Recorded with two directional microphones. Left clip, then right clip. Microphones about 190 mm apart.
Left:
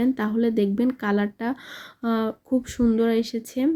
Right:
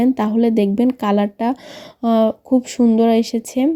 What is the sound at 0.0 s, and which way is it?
Speech, 25° right (ahead or behind).